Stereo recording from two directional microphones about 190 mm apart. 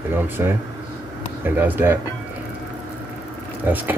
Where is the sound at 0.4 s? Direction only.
10° right (ahead or behind).